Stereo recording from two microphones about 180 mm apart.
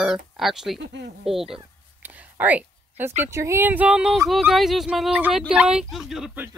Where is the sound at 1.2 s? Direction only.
Centre (ahead or behind).